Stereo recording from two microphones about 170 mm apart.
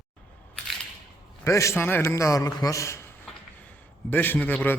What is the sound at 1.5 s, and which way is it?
Speech, 15° left (ahead or behind).